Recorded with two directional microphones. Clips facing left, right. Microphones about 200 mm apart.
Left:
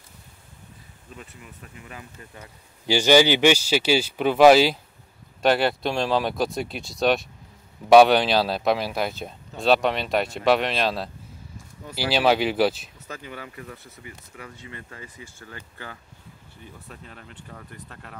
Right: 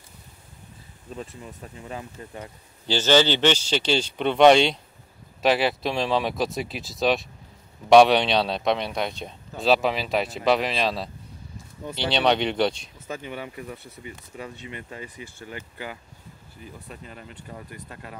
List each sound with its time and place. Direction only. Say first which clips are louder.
1.1 s speech: right 7 dB; 30° right (ahead or behind)
2.9 s speech: left 3 dB; 10° left (ahead or behind)
13.0 s speech: right 4 dB; 20° right (ahead or behind)
16.6 s speech: right 3 dB; 5° right (ahead or behind)